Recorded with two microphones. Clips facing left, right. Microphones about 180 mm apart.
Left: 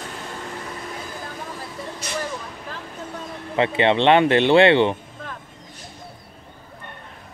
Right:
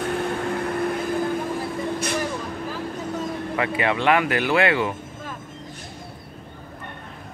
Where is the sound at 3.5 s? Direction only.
25° left (ahead or behind).